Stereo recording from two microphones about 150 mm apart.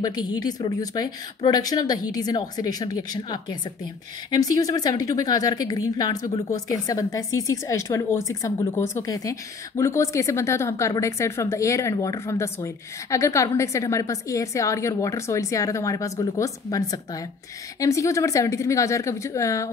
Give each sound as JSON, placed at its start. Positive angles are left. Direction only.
{"t": 0.0, "sound": "a woman's voice", "side_deg": 25}